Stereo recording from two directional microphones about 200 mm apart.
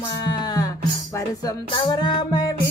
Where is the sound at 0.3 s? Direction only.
20° left (ahead or behind).